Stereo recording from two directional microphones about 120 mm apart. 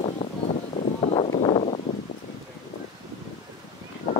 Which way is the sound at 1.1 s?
55° left (ahead or behind).